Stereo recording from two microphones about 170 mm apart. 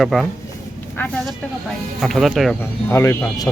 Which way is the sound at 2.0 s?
Centre (ahead or behind).